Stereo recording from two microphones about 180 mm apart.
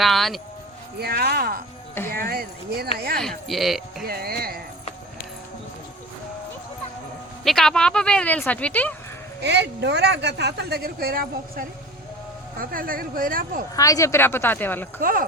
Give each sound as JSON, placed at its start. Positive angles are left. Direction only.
{"t": 0.0, "sound": "speech", "side_deg": 0}
{"t": 0.9, "sound": "speech", "side_deg": -60}
{"t": 3.2, "sound": "speech", "side_deg": 0}
{"t": 4.0, "sound": "speech", "side_deg": -60}
{"t": 7.4, "sound": "speech", "side_deg": 0}
{"t": 9.4, "sound": "speech", "side_deg": -70}
{"t": 13.7, "sound": "speech", "side_deg": 20}